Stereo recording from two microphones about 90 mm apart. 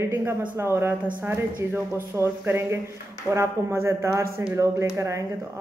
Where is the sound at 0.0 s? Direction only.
30° right (ahead or behind).